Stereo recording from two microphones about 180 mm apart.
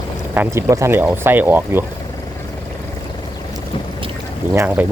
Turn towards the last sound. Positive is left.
turn(degrees=-10)  # may be behind; listen again after turning